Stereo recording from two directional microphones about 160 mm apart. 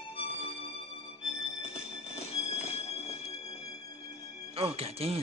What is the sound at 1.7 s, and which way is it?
Music, 40° left (ahead or behind).